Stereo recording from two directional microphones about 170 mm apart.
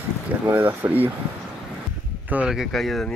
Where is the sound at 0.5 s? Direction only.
10° right (ahead or behind).